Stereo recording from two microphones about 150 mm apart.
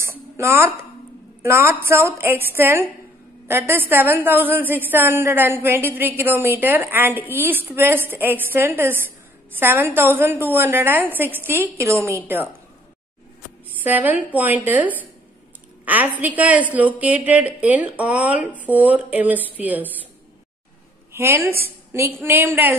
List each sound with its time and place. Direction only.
0.0 s a sound: 15° right (ahead or behind)
1.4 s a woman's voice: 15° right (ahead or behind)
13.7 s a woman's voice: 10° right (ahead or behind)
21.1 s a woman's voice: 20° right (ahead or behind)